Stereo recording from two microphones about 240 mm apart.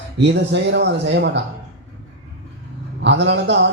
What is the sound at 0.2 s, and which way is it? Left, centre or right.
A man's voice, right.